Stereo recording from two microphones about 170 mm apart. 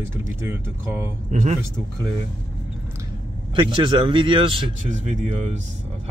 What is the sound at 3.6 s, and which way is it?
Speech, 30° right (ahead or behind).